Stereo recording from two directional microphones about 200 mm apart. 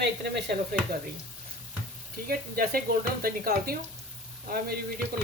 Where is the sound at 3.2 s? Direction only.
45° right (ahead or behind).